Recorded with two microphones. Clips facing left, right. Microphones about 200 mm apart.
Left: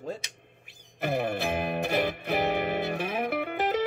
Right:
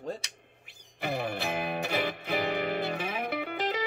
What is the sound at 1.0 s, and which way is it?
Music, 50° left (ahead or behind).